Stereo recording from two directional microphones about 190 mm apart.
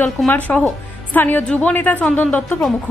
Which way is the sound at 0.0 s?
10° left (ahead or behind).